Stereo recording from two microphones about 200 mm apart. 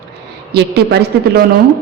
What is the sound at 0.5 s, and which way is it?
Speech, 55° right (ahead or behind).